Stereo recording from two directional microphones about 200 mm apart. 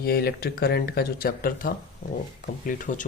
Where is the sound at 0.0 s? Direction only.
50° left (ahead or behind).